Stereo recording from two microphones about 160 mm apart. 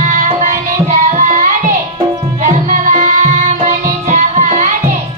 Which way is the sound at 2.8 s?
50° right (ahead or behind).